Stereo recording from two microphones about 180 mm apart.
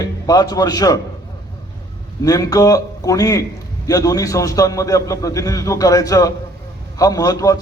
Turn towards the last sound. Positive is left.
turn(degrees=20)  # may be behind; listen again after turning